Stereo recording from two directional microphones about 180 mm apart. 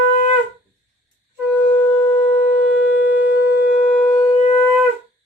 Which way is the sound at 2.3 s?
40° left (ahead or behind).